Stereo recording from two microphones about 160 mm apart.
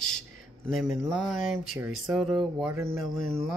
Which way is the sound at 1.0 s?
Centre (ahead or behind).